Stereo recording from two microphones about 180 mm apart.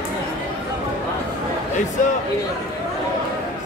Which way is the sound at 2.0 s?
45° left (ahead or behind).